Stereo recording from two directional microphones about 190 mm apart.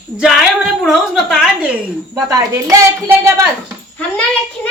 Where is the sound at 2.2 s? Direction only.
20° right (ahead or behind).